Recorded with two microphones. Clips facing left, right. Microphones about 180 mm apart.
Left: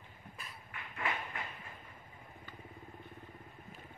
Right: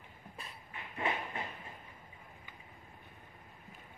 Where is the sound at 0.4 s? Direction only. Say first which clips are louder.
Right 2 dB; 25° right (ahead or behind).